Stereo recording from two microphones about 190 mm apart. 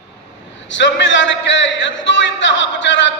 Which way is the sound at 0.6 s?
70° left (ahead or behind).